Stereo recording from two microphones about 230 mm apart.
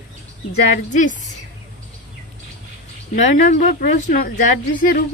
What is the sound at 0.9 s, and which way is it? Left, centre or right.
Speech, left.